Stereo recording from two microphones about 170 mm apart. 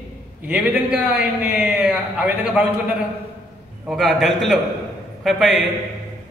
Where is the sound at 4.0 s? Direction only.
Centre (ahead or behind).